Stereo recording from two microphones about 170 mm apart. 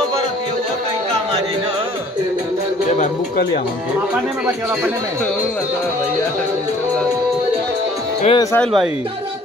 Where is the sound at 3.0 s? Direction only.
65° left (ahead or behind).